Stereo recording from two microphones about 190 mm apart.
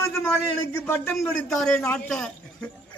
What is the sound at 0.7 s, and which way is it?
A man's voice, 10° left (ahead or behind).